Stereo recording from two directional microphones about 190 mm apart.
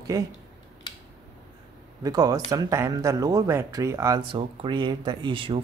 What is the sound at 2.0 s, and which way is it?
Speech, 20° right (ahead or behind).